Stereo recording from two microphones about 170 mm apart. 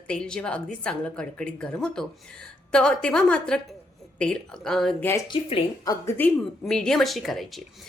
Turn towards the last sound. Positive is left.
turn(degrees=0)  # may be behind; listen again after turning